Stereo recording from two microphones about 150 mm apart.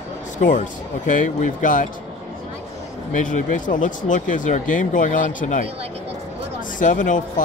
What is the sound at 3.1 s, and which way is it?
Speech, 60° left (ahead or behind).